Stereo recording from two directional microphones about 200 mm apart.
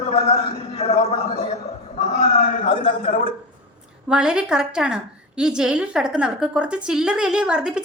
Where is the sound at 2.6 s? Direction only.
30° left (ahead or behind).